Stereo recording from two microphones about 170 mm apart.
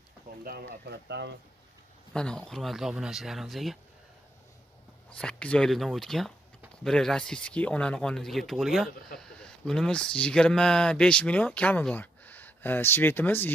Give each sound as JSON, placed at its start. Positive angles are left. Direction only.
{"t": 0.4, "sound": "speech", "side_deg": -65}
{"t": 2.1, "sound": "speech", "side_deg": 5}
{"t": 5.1, "sound": "speech", "side_deg": 5}